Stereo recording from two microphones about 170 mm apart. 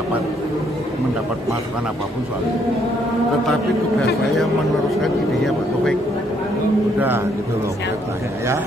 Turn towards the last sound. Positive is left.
turn(degrees=-10)  # may be behind; listen again after turning